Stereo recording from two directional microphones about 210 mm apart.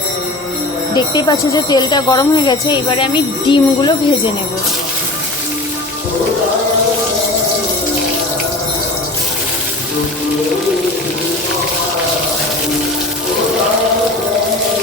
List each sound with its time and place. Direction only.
0.9 s speech: 20° left (ahead or behind)